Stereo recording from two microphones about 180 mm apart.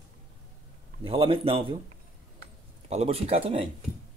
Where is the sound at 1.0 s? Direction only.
30° right (ahead or behind).